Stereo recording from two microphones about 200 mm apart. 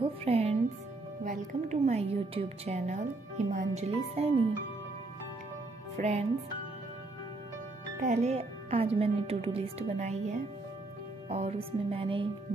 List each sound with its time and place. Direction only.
0.0 s music: 30° right (ahead or behind)
1.2 s a woman's voice: 40° right (ahead or behind)
5.9 s speech: 35° right (ahead or behind)
8.0 s a woman's voice: 35° right (ahead or behind)
11.2 s music: 30° right (ahead or behind)